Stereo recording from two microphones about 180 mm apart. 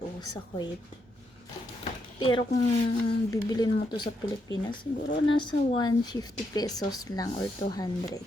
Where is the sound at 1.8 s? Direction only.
30° left (ahead or behind).